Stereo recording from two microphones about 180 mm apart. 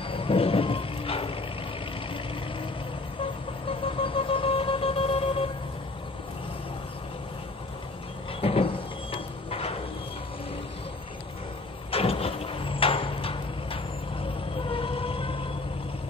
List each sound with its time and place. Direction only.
0.1 s music: 30° left (ahead or behind)
3.6 s vehicle: 30° left (ahead or behind)
8.4 s vehicle: 30° left (ahead or behind)
11.9 s vehicle: 35° left (ahead or behind)
14.7 s music: 30° left (ahead or behind)